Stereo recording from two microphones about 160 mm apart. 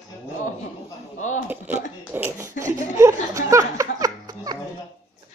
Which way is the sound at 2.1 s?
15° right (ahead or behind).